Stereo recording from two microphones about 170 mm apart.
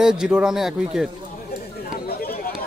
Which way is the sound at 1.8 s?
60° left (ahead or behind).